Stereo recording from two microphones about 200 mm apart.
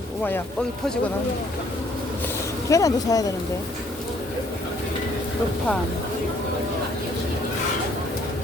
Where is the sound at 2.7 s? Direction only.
15° left (ahead or behind).